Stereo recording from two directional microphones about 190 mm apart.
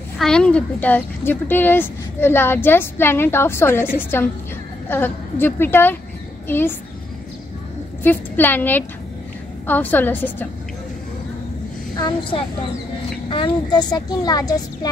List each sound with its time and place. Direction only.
0.2 s a woman's voice: 5° left (ahead or behind)
8.0 s a woman's voice: 10° left (ahead or behind)
11.9 s a woman's voice: 20° left (ahead or behind)